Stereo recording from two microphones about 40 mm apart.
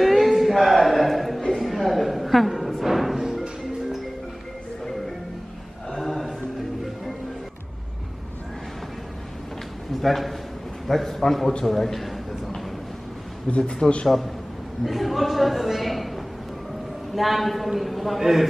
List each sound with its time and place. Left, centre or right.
0.0 s music: centre
5.9 s a sound: centre
10.0 s a man's voice: centre
13.5 s a man's voice: left
14.0 s a man's voice: centre
14.9 s a sound: centre
17.1 s a man's voice: centre